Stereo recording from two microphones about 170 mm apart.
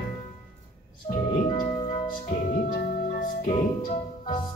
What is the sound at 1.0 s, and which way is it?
Music, 40° left (ahead or behind).